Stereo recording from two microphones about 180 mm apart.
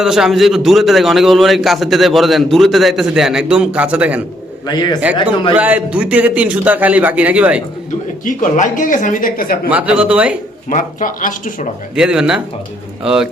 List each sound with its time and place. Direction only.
0.0 s a man's voice: centre (ahead or behind)
4.6 s a man's voice: 25° left (ahead or behind)
5.5 s a man's voice: 10° right (ahead or behind)
8.2 s speech: 45° left (ahead or behind)
9.6 s a man's voice: 5° right (ahead or behind)
10.7 s speech: 45° left (ahead or behind)
11.9 s a man's voice: 5° right (ahead or behind)